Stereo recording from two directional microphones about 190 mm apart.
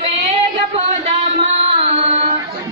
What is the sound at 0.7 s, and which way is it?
Music, 35° right (ahead or behind).